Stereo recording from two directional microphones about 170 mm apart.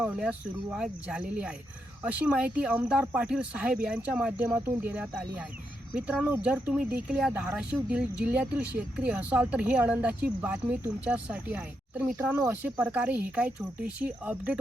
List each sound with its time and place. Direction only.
0.0 s speech: 10° right (ahead or behind)